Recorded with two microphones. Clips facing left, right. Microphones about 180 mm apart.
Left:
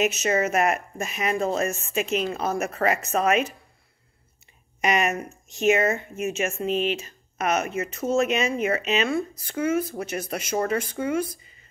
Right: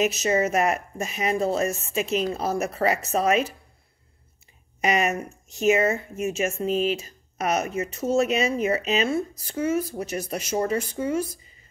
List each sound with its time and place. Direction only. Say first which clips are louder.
0.0 s speech: right 1 dB; 35° right (ahead or behind)
4.8 s speech: even; 30° right (ahead or behind)